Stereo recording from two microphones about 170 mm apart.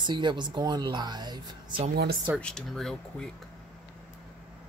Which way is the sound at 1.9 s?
70° right (ahead or behind).